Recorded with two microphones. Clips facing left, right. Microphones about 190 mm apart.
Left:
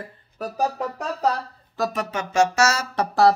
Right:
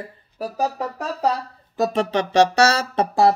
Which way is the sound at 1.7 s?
25° right (ahead or behind).